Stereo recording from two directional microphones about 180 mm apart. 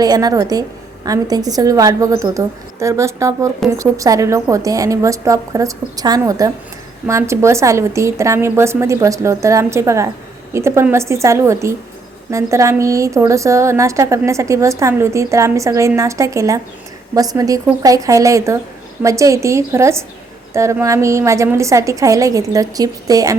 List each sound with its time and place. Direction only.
0.0 s a woman's voice: 20° right (ahead or behind)